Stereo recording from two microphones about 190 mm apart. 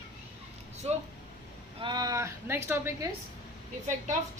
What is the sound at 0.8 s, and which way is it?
A woman's voice, 30° right (ahead or behind).